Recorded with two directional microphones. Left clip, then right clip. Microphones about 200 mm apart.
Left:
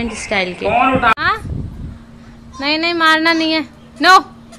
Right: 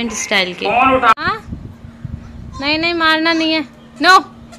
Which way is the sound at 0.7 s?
35° left (ahead or behind).